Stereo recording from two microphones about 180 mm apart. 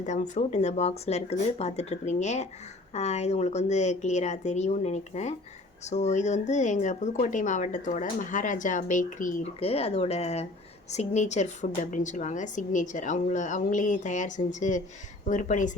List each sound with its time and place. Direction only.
0.0 s a woman's voice: 40° left (ahead or behind)
9.6 s a woman's voice: 35° left (ahead or behind)